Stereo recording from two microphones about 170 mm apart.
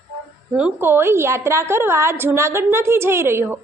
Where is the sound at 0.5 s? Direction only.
10° right (ahead or behind).